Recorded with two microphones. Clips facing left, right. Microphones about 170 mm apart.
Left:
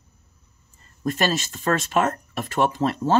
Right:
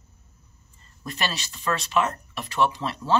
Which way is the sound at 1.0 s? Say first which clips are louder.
Left 8 dB; 45° left (ahead or behind).